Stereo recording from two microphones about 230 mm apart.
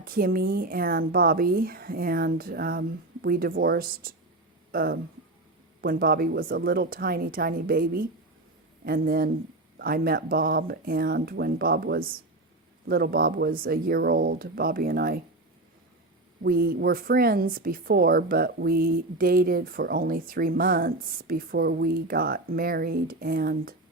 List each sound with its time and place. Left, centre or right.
0.0 s speech: right
16.4 s speech: right